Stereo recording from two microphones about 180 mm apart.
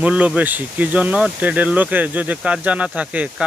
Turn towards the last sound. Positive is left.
turn(degrees=-5)  # may be behind; listen again after turning